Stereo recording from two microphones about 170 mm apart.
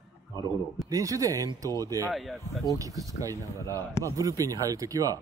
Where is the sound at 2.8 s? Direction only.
20° right (ahead or behind).